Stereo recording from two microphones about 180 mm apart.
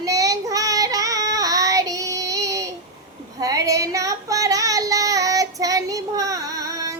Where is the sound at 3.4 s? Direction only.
20° right (ahead or behind).